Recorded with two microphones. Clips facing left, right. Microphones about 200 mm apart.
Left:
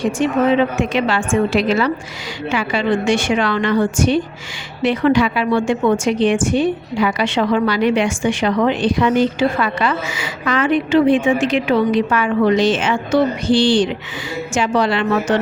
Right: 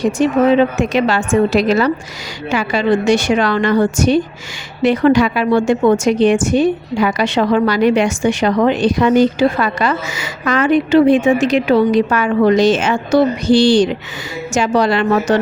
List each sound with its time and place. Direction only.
0.0 s a woman's voice: 40° right (ahead or behind)